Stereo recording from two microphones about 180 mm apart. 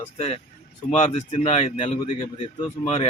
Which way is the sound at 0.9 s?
35° left (ahead or behind).